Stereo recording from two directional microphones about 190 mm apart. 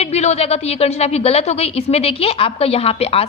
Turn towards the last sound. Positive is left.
turn(degrees=30)  # may be behind; listen again after turning